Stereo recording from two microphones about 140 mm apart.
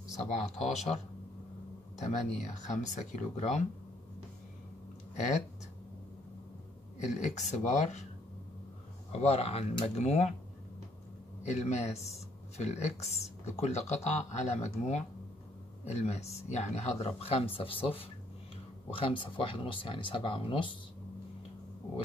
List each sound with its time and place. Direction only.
0.3 s speech: 55° left (ahead or behind)
2.0 s speech: 60° left (ahead or behind)
5.1 s speech: 60° left (ahead or behind)
7.2 s speech: 55° left (ahead or behind)
9.1 s speech: 50° left (ahead or behind)
11.4 s speech: 55° left (ahead or behind); by 20.7 s 35° left (ahead or behind)